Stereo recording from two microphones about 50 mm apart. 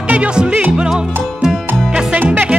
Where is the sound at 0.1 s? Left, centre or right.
Right.